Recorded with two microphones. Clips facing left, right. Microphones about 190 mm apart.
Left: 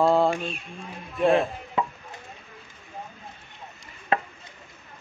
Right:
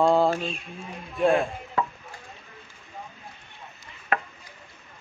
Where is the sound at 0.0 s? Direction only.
Centre (ahead or behind).